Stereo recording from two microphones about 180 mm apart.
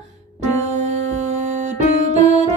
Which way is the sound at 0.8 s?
40° right (ahead or behind).